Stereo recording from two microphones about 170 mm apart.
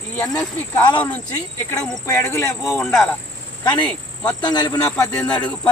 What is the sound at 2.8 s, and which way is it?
Speech, 5° left (ahead or behind).